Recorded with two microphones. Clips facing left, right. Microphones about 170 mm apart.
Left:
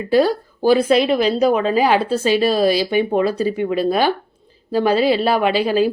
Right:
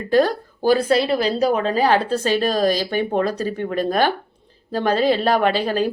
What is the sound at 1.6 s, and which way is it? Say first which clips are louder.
A woman's voice: left 2 dB; 10° left (ahead or behind).